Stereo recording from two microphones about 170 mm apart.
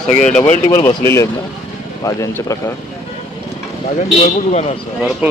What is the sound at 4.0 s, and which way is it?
Speech, 45° left (ahead or behind).